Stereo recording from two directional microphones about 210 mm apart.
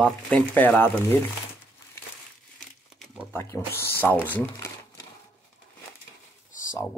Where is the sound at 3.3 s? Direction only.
10° left (ahead or behind).